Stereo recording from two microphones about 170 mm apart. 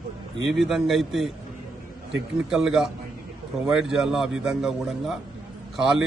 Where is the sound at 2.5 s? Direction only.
5° right (ahead or behind).